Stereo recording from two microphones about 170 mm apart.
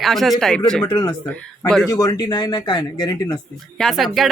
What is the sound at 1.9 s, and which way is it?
Speech, 20° left (ahead or behind).